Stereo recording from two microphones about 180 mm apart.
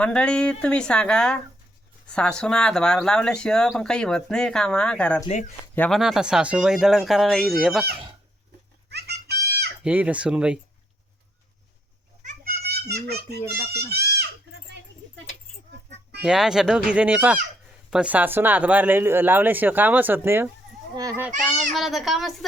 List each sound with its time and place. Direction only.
0.0 s speech: 5° left (ahead or behind)
6.0 s speech: 5° right (ahead or behind)
8.9 s goat: 65° right (ahead or behind)
9.8 s speech: 10° right (ahead or behind)
12.2 s children playing: 45° right (ahead or behind)
12.6 s a child's voice: 60° right (ahead or behind)
13.8 s goat: 60° right (ahead or behind)
16.2 s a child's voice: 5° right (ahead or behind); by 21.2 s 20° right (ahead or behind)
21.4 s speech: centre (ahead or behind)